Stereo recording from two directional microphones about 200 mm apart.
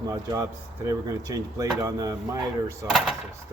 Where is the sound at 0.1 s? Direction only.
15° right (ahead or behind).